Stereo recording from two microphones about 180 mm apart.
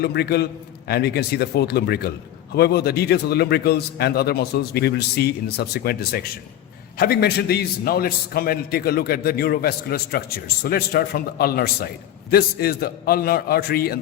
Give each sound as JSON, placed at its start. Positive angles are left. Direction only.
{"t": 0.0, "sound": "a man's voice", "side_deg": 65}